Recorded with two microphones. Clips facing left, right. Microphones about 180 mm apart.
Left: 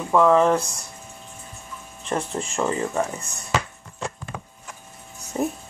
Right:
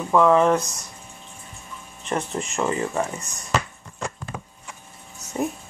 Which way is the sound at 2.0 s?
30° left (ahead or behind).